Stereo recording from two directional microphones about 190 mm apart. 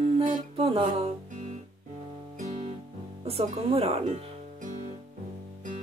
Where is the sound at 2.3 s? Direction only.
45° right (ahead or behind).